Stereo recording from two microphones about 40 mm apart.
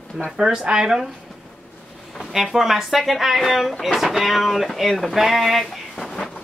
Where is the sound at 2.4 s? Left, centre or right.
Centre.